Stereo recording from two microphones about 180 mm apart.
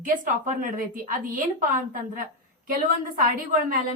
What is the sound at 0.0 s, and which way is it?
A woman's voice, 45° right (ahead or behind).